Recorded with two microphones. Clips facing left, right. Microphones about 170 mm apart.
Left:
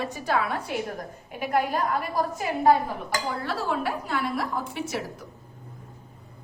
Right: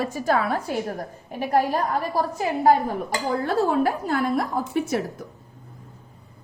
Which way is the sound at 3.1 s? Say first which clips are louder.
Even; 25° right (ahead or behind).